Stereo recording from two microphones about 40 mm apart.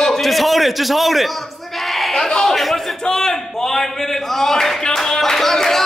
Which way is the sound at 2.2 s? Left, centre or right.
Centre.